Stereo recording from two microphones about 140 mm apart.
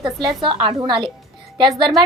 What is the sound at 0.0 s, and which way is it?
A woman's voice, 30° right (ahead or behind).